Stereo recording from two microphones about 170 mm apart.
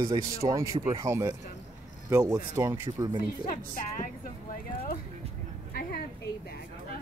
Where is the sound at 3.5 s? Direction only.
50° left (ahead or behind).